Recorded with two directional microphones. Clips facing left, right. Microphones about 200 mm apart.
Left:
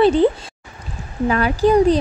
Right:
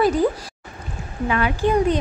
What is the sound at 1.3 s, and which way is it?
Speech, 40° left (ahead or behind).